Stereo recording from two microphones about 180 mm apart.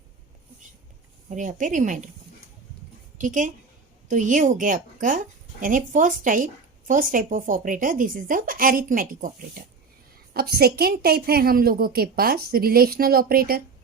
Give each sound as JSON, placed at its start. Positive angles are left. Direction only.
{"t": 1.3, "sound": "speech", "side_deg": -45}
{"t": 3.2, "sound": "speech", "side_deg": -45}
{"t": 10.3, "sound": "a woman's voice", "side_deg": -60}